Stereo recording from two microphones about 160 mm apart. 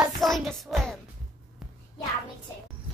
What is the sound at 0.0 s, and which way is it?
Music, centre (ahead or behind).